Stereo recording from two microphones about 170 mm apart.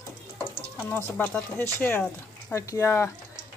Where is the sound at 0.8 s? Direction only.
10° left (ahead or behind).